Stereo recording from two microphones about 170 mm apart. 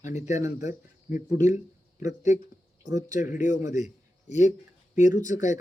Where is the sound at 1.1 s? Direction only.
45° left (ahead or behind).